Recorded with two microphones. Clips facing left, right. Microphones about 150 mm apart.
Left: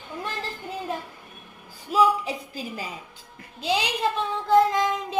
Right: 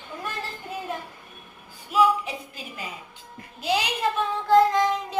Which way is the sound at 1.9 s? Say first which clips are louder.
Even; 35° left (ahead or behind).